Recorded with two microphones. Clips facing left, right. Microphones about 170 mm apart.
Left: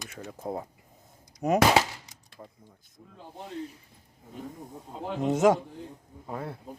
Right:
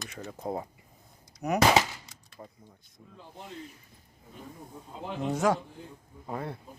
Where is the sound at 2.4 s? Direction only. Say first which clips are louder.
Even; 10° right (ahead or behind).